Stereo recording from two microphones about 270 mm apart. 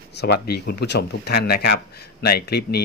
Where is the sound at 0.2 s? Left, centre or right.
Left.